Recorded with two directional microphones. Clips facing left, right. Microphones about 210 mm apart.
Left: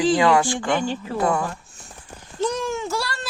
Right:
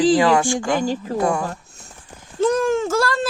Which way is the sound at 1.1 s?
25° right (ahead or behind).